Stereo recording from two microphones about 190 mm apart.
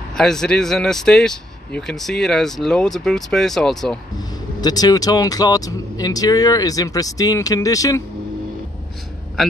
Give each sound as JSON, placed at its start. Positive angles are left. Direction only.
{"t": 0.1, "sound": "speech", "side_deg": 5}
{"t": 4.6, "sound": "speech", "side_deg": 20}